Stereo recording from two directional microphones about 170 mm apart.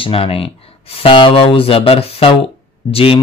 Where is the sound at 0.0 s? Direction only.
35° left (ahead or behind).